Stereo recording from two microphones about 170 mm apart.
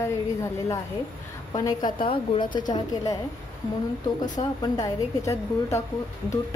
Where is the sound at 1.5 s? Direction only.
20° left (ahead or behind).